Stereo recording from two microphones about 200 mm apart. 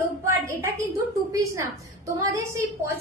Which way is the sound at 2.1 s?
15° right (ahead or behind).